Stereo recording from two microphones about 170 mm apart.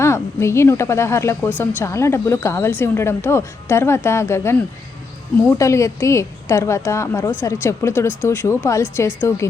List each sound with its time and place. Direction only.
0.0 s a woman's voice: 15° left (ahead or behind)
5.5 s a woman's voice: 15° left (ahead or behind)